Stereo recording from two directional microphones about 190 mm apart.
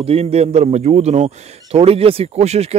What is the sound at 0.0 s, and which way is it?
A man's voice, 30° right (ahead or behind).